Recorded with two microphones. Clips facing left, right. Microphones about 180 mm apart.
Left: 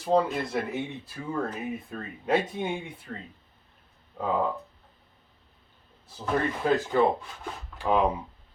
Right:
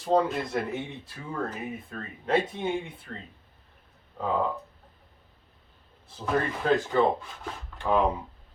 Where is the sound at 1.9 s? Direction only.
10° left (ahead or behind).